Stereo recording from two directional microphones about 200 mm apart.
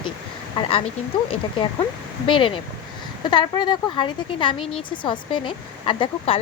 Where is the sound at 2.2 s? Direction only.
25° left (ahead or behind).